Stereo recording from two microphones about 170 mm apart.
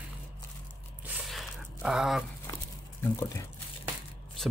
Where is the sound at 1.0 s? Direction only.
5° right (ahead or behind).